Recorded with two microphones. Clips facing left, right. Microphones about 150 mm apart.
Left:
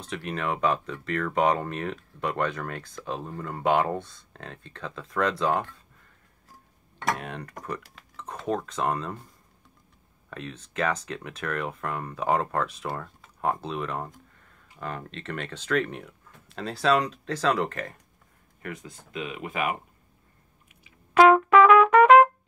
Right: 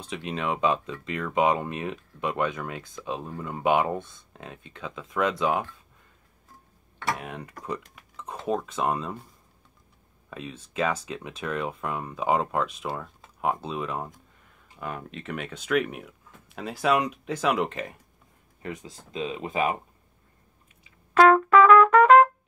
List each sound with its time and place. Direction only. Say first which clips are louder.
0.2 s speech: right 1 dB; 20° right (ahead or behind)
7.2 s speech: left 1 dB; 5° right (ahead or behind)
10.3 s speech: right 1 dB; 10° right (ahead or behind); by 19.8 s 30° right (ahead or behind)
20.8 s trumpet: left 1 dB; 5° left (ahead or behind)